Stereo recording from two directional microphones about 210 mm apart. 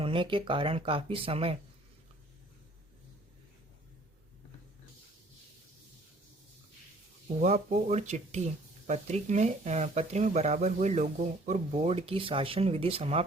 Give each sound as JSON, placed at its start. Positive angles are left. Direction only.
{"t": 0.0, "sound": "speech", "side_deg": -25}
{"t": 7.3, "sound": "speech", "side_deg": -35}